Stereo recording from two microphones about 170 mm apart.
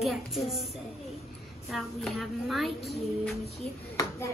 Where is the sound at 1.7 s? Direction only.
Centre (ahead or behind).